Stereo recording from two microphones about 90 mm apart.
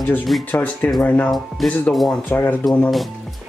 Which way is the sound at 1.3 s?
Centre (ahead or behind).